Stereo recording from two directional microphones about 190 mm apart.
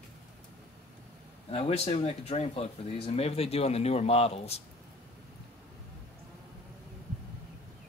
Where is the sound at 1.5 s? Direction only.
30° left (ahead or behind).